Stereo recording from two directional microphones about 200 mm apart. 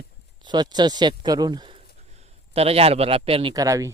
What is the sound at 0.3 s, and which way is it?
A man's voice, 20° right (ahead or behind).